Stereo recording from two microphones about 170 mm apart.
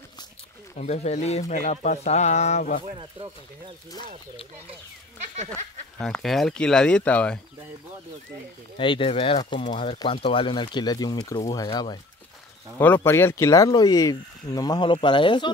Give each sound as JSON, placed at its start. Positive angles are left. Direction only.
{"t": 0.7, "sound": "speech", "side_deg": 40}
{"t": 3.0, "sound": "speech", "side_deg": -30}
{"t": 5.9, "sound": "speech", "side_deg": 5}
{"t": 8.7, "sound": "speech", "side_deg": 30}
{"t": 12.7, "sound": "speech", "side_deg": 10}